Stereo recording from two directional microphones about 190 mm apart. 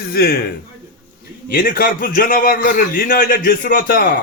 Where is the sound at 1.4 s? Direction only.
50° left (ahead or behind).